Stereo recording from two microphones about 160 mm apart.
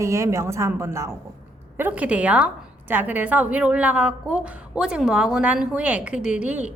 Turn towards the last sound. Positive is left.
turn(degrees=-10)  # may be behind; listen again after turning